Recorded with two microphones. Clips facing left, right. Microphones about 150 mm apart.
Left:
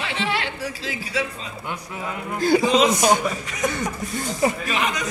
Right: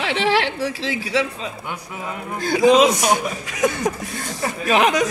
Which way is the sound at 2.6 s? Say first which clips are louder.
Right 4 dB; 80° right.